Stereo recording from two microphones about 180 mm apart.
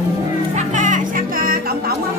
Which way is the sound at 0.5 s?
45° right (ahead or behind).